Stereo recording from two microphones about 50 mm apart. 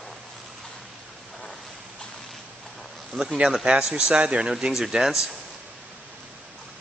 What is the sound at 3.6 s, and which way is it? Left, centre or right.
Speech, centre.